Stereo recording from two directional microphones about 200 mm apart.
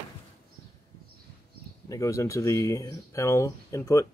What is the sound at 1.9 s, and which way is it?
Speech, 15° left (ahead or behind).